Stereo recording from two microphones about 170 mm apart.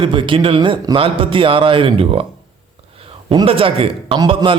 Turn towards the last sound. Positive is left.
turn(degrees=-30)  # may be behind; listen again after turning